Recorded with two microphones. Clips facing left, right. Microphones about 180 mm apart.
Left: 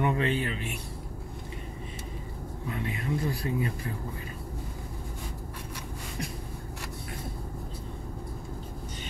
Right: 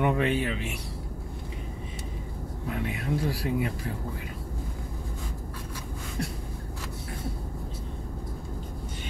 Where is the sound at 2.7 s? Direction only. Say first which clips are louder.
Right 2 dB; 80° right.